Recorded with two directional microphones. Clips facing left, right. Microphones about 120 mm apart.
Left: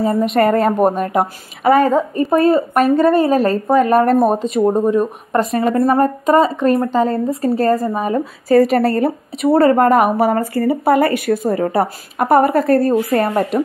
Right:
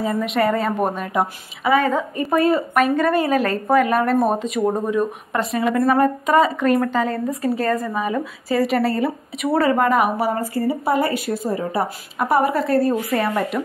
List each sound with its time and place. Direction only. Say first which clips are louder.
0.0 s a woman's voice: left 5 dB; 40° left (ahead or behind)
1.9 s speech: left 6 dB; 35° left (ahead or behind)
5.3 s a woman's voice: left 6 dB; 40° left (ahead or behind)